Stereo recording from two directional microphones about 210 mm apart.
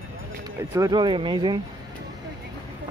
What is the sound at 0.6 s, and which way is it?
Speech, 15° right (ahead or behind).